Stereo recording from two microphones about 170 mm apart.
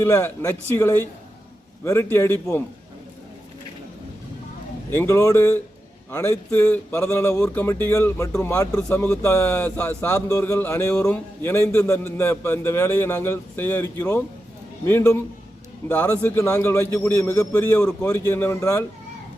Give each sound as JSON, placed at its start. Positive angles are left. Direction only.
{"t": 0.0, "sound": "a man's voice", "side_deg": 15}
{"t": 4.9, "sound": "a man's voice", "side_deg": 15}